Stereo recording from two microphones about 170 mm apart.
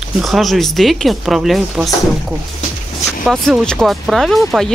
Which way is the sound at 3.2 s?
5° left (ahead or behind).